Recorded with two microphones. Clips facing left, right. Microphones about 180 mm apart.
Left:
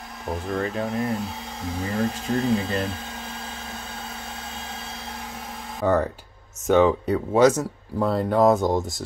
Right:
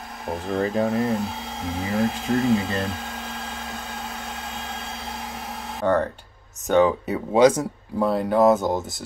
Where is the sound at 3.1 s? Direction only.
75° right (ahead or behind).